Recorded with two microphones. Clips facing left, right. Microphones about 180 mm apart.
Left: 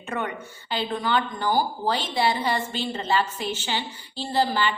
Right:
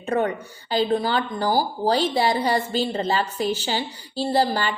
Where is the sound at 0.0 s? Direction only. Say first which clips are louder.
Right 7 dB; 35° right (ahead or behind).